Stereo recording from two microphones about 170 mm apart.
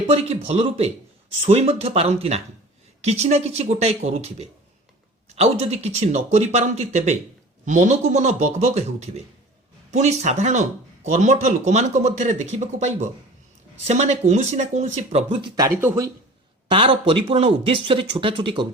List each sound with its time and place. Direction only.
0.1 s speech: 35° right (ahead or behind)
15.4 s speech: 25° right (ahead or behind)
16.7 s speech: 30° right (ahead or behind)